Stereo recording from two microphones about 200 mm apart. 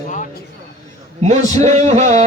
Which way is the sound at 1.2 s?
35° right (ahead or behind).